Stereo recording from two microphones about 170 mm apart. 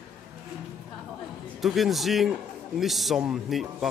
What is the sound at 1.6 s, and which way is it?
Speech, centre (ahead or behind).